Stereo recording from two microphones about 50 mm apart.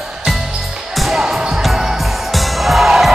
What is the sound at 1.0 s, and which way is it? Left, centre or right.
Music, centre.